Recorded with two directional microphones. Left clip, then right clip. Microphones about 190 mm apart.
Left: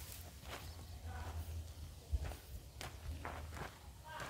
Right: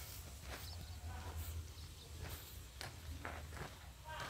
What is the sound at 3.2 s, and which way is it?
Walk, 5° right (ahead or behind).